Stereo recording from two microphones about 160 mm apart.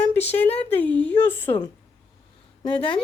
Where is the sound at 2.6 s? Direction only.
35° left (ahead or behind).